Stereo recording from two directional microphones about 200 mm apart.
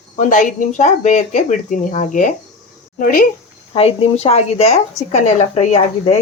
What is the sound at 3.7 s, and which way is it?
A woman's voice, 30° left (ahead or behind).